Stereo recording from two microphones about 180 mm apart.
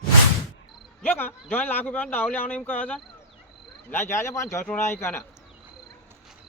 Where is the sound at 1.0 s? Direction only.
10° left (ahead or behind).